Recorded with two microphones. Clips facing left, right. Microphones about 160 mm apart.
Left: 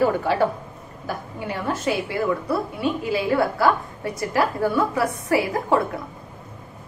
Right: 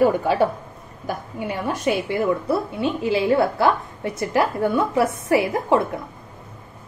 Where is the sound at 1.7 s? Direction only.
20° right (ahead or behind).